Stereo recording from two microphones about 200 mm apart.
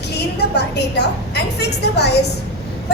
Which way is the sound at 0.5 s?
55° left (ahead or behind).